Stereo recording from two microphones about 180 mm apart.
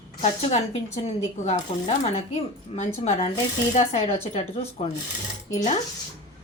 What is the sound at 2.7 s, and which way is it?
Speech, 40° left (ahead or behind).